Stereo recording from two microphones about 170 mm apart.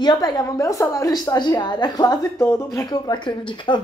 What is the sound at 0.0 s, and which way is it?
A woman's voice, 25° left (ahead or behind).